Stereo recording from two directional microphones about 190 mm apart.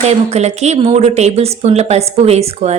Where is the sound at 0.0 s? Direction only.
35° right (ahead or behind).